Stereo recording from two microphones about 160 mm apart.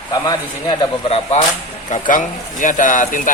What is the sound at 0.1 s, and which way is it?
Speech, 25° left (ahead or behind).